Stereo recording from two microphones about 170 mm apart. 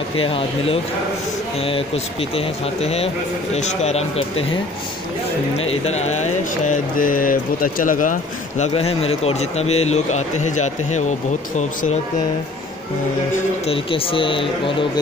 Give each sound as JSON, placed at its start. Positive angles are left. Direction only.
{"t": 0.2, "sound": "speech", "side_deg": 35}
{"t": 5.7, "sound": "mantra", "side_deg": 40}
{"t": 13.7, "sound": "speech", "side_deg": 30}